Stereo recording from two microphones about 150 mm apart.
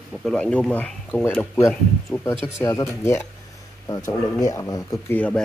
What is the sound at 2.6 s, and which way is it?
Speech, 20° left (ahead or behind).